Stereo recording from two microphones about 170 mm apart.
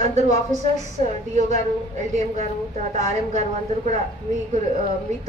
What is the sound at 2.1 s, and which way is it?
A woman's voice, 45° right (ahead or behind).